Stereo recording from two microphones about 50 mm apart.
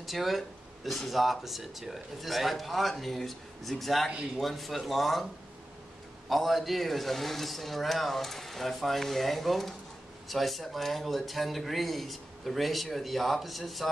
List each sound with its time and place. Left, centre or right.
0.0 s speech: centre
6.2 s speech: centre